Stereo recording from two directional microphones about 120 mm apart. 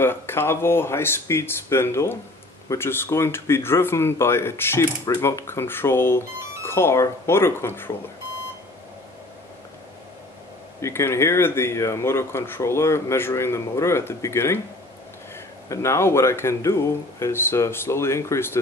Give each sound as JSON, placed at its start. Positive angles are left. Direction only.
{"t": 0.0, "sound": "speech", "side_deg": 20}
{"t": 10.8, "sound": "speech", "side_deg": 20}
{"t": 15.7, "sound": "speech", "side_deg": 25}